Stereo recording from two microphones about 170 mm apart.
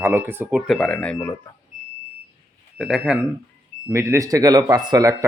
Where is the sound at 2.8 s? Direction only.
5° right (ahead or behind).